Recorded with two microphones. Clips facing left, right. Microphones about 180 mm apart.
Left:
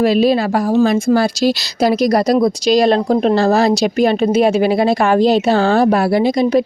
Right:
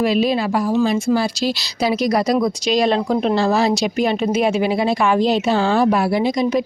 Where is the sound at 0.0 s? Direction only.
35° left (ahead or behind).